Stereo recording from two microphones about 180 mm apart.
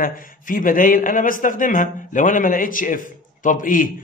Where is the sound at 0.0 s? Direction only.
50° left (ahead or behind).